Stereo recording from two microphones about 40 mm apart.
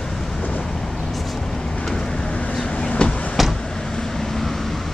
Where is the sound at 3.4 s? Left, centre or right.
Centre.